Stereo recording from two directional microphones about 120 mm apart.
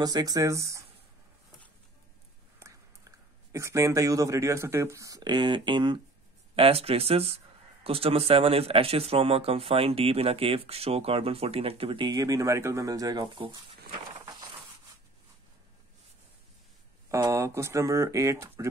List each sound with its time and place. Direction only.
0.0 s speech: 35° right (ahead or behind)
3.5 s speech: 25° right (ahead or behind); by 5.9 s 40° right (ahead or behind)
6.5 s speech: 55° right (ahead or behind)
17.1 s speech: 25° right (ahead or behind)